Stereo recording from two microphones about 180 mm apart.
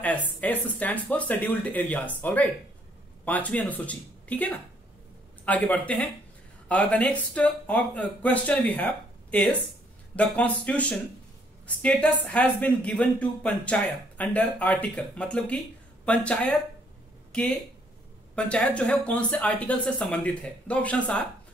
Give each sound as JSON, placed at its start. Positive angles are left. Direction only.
{"t": 0.0, "sound": "speech", "side_deg": 10}